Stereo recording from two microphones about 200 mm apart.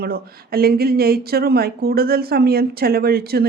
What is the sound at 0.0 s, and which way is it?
Speech, 50° right (ahead or behind).